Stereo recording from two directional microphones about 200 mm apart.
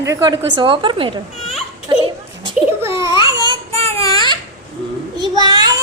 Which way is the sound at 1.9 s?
25° right (ahead or behind).